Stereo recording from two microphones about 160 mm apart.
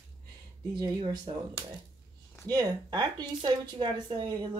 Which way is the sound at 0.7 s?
30° right (ahead or behind).